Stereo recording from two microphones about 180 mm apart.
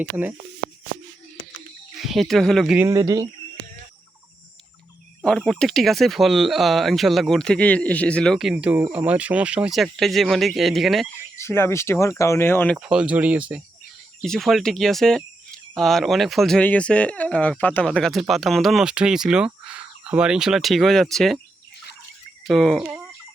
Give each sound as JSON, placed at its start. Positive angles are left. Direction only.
{"t": 0.0, "sound": "speech", "side_deg": -10}
{"t": 2.0, "sound": "speech", "side_deg": 0}
{"t": 2.7, "sound": "speech", "side_deg": -20}
{"t": 5.2, "sound": "speech", "side_deg": 5}
{"t": 11.3, "sound": "speech", "side_deg": 15}
{"t": 12.7, "sound": "speech", "side_deg": -5}
{"t": 22.4, "sound": "speech", "side_deg": 0}
{"t": 22.8, "sound": "fowl", "side_deg": -5}